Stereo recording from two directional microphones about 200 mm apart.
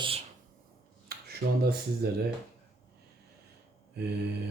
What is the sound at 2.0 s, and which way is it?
Speech, 50° right (ahead or behind).